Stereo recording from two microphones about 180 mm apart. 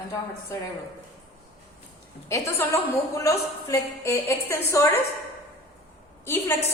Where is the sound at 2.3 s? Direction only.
15° left (ahead or behind).